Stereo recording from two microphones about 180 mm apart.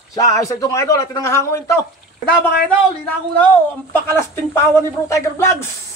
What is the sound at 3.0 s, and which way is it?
A man's voice, 10° left (ahead or behind).